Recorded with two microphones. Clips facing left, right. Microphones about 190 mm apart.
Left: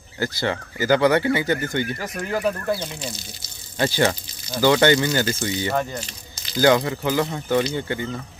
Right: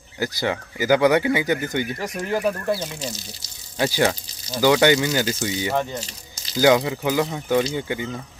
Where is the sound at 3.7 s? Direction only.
10° right (ahead or behind).